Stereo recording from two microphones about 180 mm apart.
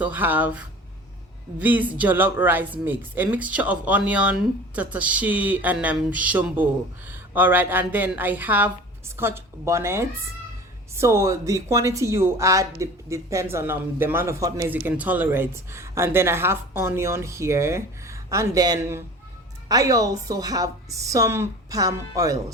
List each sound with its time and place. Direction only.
0.0 s a woman's voice: 10° right (ahead or behind)